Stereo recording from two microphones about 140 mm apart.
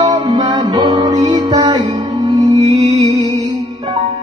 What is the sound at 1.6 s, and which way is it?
Music, 40° right (ahead or behind).